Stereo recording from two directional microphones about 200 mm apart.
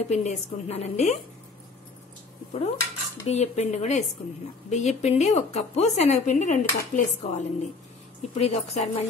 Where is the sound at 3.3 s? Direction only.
35° left (ahead or behind).